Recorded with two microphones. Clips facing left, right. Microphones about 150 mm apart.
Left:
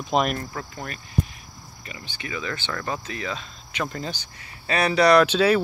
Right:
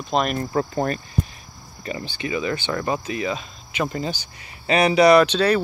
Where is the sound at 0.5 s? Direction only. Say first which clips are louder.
Right 12 dB; 40° right (ahead or behind).